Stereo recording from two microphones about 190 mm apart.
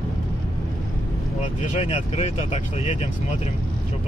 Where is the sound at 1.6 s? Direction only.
35° left (ahead or behind).